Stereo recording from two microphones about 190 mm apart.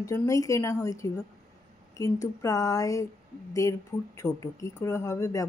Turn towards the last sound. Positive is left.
turn(degrees=15)  # may be behind; listen again after turning